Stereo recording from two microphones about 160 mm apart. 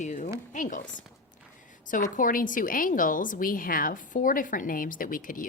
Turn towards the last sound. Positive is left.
turn(degrees=60)  # may be behind; listen again after turning